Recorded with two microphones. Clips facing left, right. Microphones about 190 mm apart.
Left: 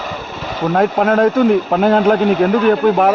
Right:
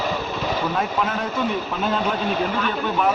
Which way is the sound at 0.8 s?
60° left (ahead or behind).